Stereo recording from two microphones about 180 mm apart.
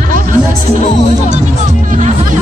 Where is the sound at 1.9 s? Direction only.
45° right (ahead or behind).